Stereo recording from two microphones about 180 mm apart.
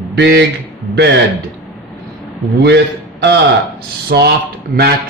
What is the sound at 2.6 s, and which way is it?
A man's voice, 70° right (ahead or behind).